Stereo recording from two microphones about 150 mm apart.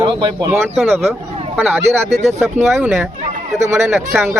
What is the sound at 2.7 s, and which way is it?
Speech, 5° right (ahead or behind).